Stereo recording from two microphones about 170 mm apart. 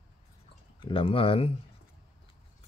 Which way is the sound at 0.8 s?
30° left (ahead or behind).